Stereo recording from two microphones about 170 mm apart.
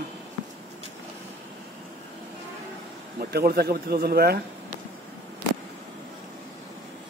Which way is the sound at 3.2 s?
65° right (ahead or behind).